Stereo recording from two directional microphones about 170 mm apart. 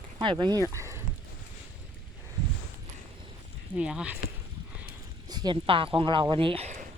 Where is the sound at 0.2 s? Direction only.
25° right (ahead or behind).